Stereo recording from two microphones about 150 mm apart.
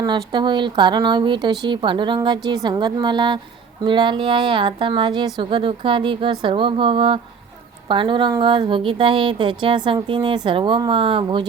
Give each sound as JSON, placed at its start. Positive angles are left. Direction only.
{"t": 0.0, "sound": "a woman's voice", "side_deg": -30}